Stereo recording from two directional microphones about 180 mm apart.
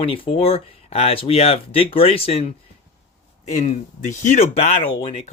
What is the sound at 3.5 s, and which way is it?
Speech, 40° left (ahead or behind).